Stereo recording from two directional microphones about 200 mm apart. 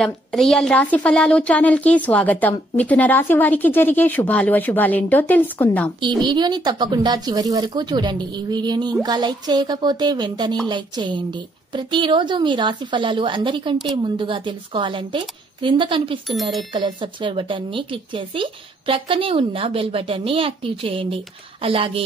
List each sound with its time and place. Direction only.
0.0 s a woman's voice: centre (ahead or behind)
5.9 s speech: 25° right (ahead or behind)